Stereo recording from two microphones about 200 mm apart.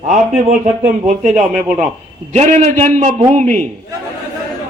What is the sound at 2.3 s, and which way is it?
A man's voice, 35° right (ahead or behind).